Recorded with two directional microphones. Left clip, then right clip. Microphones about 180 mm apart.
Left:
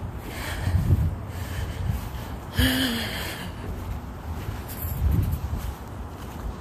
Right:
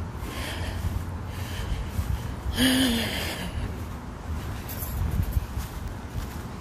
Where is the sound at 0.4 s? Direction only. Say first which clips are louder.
Left 1 dB; 15° right (ahead or behind).